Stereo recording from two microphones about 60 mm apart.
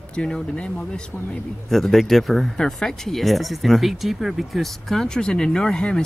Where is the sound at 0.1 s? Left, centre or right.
Centre.